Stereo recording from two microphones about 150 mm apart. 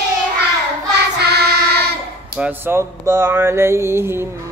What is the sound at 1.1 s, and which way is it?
Child singing, 90° right.